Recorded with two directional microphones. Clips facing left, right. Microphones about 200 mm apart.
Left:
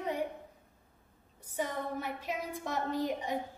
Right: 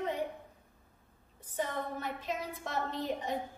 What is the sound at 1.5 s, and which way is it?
A woman's voice, 10° left (ahead or behind).